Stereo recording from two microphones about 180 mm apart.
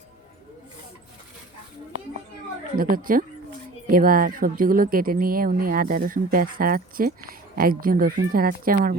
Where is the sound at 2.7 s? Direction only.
50° right (ahead or behind).